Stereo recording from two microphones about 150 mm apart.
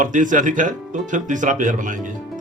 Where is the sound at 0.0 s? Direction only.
55° right (ahead or behind).